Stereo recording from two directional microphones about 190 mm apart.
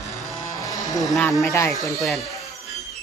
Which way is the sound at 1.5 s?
15° left (ahead or behind).